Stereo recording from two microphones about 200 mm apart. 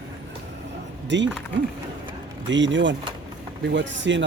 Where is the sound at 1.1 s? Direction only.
65° right (ahead or behind).